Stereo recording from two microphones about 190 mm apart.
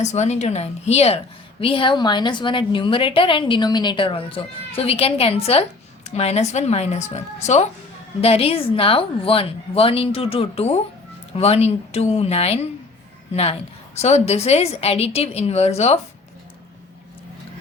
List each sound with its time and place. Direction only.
0.0 s a woman's voice: 35° left (ahead or behind)